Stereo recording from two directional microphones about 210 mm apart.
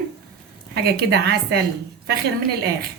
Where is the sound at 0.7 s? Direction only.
50° right (ahead or behind).